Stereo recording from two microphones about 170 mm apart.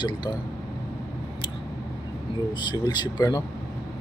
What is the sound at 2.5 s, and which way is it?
Speech, 25° left (ahead or behind).